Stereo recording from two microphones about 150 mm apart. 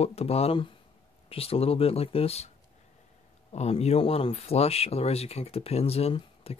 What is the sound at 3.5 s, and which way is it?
Speech, 45° left (ahead or behind).